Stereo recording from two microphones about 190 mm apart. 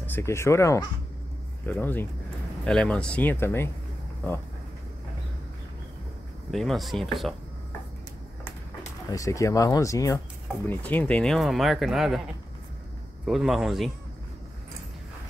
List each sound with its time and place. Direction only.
0.0 s speech: 10° left (ahead or behind)
6.5 s speech: centre (ahead or behind)
9.1 s speech: 15° left (ahead or behind); by 12.2 s centre (ahead or behind)
13.2 s speech: centre (ahead or behind)